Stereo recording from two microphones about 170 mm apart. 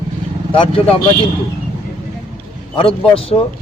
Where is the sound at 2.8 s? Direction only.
30° left (ahead or behind).